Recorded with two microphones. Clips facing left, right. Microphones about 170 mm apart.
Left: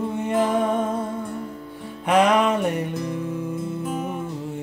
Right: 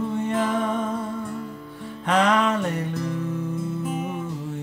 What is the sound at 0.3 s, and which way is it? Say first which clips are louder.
Music: left 5 dB; 15° left (ahead or behind).